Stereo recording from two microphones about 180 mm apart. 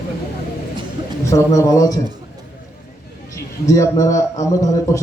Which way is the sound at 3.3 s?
15° left (ahead or behind).